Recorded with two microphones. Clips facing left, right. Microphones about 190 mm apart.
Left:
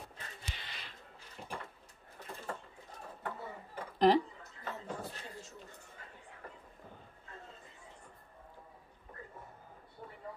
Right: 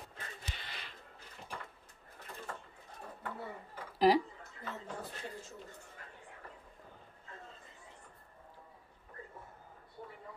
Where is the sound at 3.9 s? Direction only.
5° right (ahead or behind).